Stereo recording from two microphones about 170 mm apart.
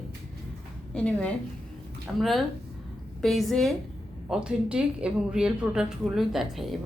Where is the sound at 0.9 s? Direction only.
5° left (ahead or behind).